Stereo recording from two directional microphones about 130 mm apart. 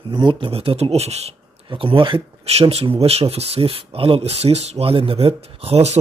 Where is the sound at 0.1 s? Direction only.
40° right (ahead or behind); by 1.3 s 55° right (ahead or behind).